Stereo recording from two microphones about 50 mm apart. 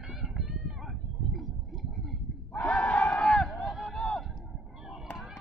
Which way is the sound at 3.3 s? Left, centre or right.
Left.